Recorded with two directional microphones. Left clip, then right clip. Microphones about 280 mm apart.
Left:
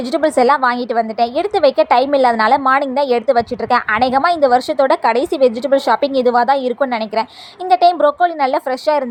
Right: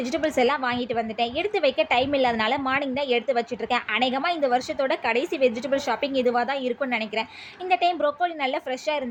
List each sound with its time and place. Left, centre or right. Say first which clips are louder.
0.1 s a woman's voice: left 11 dB; centre